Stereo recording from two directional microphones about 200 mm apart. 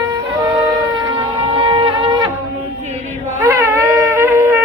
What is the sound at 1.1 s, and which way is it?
Shofar, 25° right (ahead or behind).